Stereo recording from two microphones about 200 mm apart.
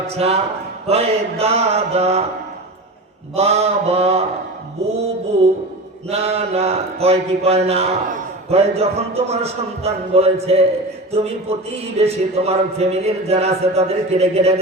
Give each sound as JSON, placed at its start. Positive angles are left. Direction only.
{"t": 0.2, "sound": "a man's voice", "side_deg": -30}
{"t": 3.3, "sound": "a man's voice", "side_deg": -30}
{"t": 6.1, "sound": "a man's voice", "side_deg": -30}